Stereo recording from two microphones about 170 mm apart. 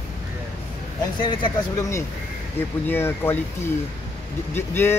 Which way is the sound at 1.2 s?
30° left (ahead or behind).